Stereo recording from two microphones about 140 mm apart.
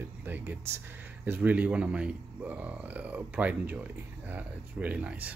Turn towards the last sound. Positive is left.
turn(degrees=-10)  # may be behind; listen again after turning